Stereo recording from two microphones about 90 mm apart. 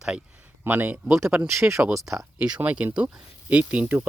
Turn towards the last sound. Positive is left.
turn(degrees=-15)  # may be behind; listen again after turning